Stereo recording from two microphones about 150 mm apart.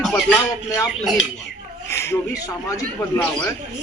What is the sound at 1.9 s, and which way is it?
A man's voice, 15° left (ahead or behind).